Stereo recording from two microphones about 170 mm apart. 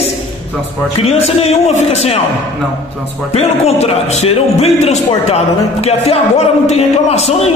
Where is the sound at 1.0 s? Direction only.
35° left (ahead or behind).